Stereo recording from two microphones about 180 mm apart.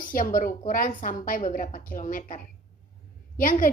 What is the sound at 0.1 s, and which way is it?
A woman's voice, 50° left (ahead or behind).